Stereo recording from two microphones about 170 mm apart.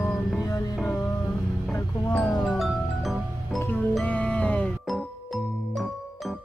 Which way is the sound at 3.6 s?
10° left (ahead or behind).